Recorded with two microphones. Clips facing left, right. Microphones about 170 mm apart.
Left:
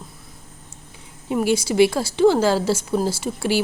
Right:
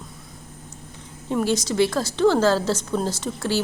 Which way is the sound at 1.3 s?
10° left (ahead or behind).